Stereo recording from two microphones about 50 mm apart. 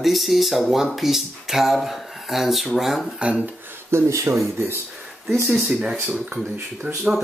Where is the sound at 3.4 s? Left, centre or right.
Right.